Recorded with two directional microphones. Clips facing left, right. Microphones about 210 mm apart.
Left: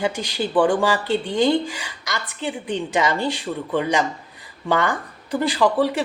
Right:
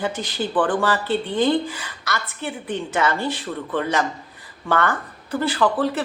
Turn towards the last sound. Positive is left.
turn(degrees=15)  # may be behind; listen again after turning